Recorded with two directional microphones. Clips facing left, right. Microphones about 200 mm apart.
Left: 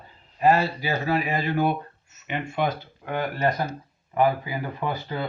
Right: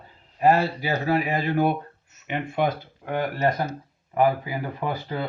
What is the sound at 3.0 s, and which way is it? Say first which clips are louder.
Speech: right 1 dB; 40° right (ahead or behind).